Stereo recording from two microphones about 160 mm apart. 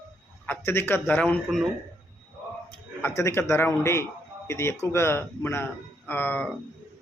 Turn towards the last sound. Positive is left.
turn(degrees=10)  # may be behind; listen again after turning